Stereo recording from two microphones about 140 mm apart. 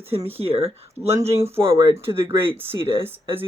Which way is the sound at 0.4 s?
45° right (ahead or behind).